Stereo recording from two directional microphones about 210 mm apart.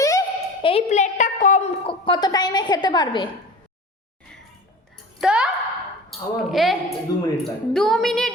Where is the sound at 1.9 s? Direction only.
20° left (ahead or behind).